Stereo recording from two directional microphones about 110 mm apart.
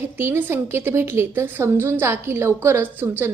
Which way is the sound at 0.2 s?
20° right (ahead or behind).